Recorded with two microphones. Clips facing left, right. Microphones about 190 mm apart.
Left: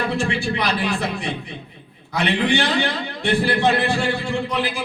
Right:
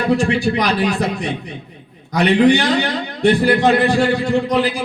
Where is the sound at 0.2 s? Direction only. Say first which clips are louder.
Right 6 dB; 40° right (ahead or behind).